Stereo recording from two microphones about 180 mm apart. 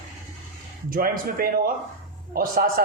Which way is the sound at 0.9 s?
55° right (ahead or behind).